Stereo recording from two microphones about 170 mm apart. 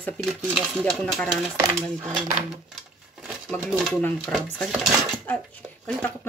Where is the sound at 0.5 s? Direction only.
Centre (ahead or behind).